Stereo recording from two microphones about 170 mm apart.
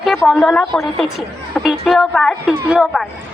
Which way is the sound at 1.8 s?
Centre (ahead or behind).